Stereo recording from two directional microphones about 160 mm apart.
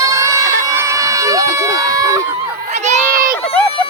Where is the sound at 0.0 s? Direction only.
20° right (ahead or behind).